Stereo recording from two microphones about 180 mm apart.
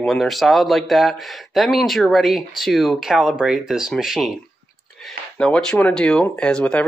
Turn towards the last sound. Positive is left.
turn(degrees=5)  # may be behind; listen again after turning